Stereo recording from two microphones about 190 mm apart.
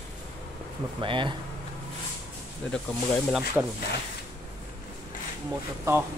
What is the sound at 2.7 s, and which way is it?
Speech, 5° left (ahead or behind).